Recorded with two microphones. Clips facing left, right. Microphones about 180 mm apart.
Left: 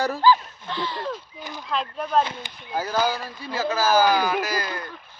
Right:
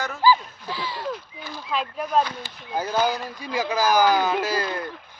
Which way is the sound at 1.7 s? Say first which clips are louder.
Even; 5° right (ahead or behind).